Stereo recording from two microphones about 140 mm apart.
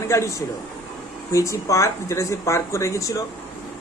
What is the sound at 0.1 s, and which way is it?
Speech, 20° left (ahead or behind).